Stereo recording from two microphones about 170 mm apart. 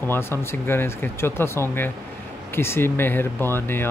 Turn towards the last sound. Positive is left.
turn(degrees=15)  # may be behind; listen again after turning